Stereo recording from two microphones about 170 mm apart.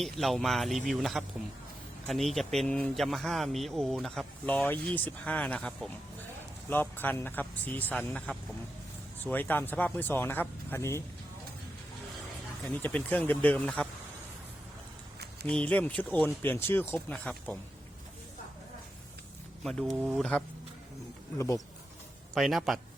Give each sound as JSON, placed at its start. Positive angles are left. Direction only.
{"t": 0.0, "sound": "speech", "side_deg": 0}
{"t": 12.6, "sound": "speech", "side_deg": 10}
{"t": 15.4, "sound": "speech", "side_deg": 10}
{"t": 19.6, "sound": "speech", "side_deg": 0}
{"t": 21.3, "sound": "speech", "side_deg": 15}
{"t": 22.4, "sound": "speech", "side_deg": 0}